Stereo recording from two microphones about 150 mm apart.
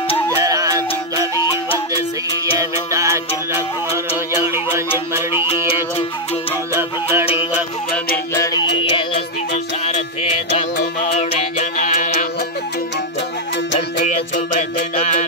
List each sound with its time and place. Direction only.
0.4 s music: 25° right (ahead or behind)
2.5 s music: 20° right (ahead or behind)
6.7 s music: 15° right (ahead or behind)
8.7 s music: 35° left (ahead or behind)
10.8 s music: 55° left (ahead or behind)
13.7 s music: 50° left (ahead or behind)